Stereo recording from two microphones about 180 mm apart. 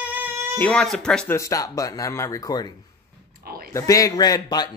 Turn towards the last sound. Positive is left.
turn(degrees=20)  # may be behind; listen again after turning